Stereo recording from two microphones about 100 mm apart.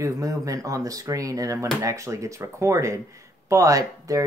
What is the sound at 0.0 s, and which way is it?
Speech, 35° right (ahead or behind).